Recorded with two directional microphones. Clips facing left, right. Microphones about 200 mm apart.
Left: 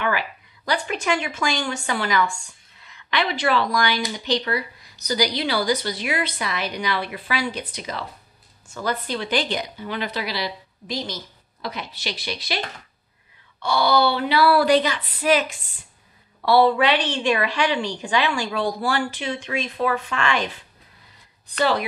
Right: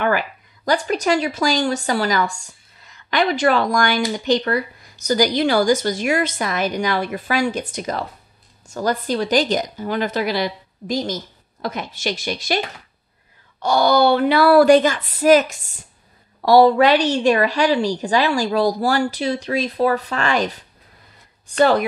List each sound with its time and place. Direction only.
0.7 s a woman's voice: 40° right (ahead or behind)
13.6 s a woman's voice: 45° right (ahead or behind)